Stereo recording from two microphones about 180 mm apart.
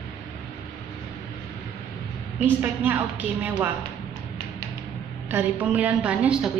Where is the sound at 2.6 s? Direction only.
10° right (ahead or behind).